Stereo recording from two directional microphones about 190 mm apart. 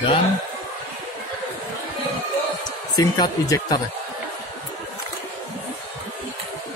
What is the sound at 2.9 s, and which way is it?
Speech, 20° left (ahead or behind).